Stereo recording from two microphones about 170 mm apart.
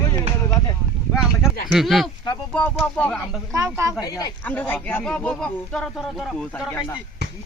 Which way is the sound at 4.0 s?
20° left (ahead or behind).